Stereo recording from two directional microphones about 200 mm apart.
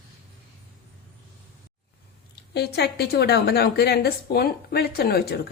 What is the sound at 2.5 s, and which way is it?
A woman's voice, 55° left (ahead or behind).